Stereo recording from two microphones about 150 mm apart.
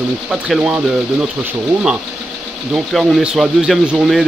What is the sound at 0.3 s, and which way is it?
Speech, 5° right (ahead or behind).